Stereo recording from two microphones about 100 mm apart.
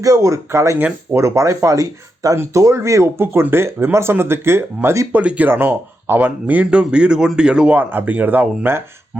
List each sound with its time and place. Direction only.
0.0 s speech: 35° right (ahead or behind)
5.2 s speech: 15° right (ahead or behind)